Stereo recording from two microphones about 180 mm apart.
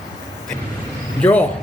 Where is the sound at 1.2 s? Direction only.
10° left (ahead or behind).